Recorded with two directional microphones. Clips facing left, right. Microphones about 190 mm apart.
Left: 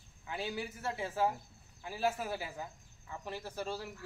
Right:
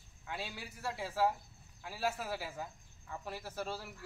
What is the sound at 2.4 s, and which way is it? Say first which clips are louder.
Speech: even; centre (ahead or behind).